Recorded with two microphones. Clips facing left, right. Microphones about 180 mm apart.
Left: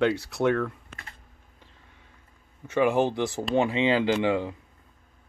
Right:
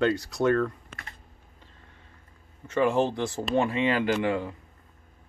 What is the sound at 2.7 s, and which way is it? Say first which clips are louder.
Speech: left 1 dB; 10° left (ahead or behind).